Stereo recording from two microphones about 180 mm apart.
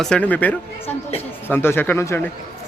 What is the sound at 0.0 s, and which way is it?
A man's voice, 5° left (ahead or behind).